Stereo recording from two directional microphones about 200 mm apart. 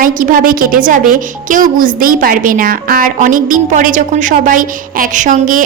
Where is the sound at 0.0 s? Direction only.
45° right (ahead or behind).